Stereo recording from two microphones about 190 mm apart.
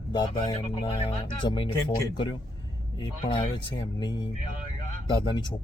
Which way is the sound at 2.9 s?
25° left (ahead or behind).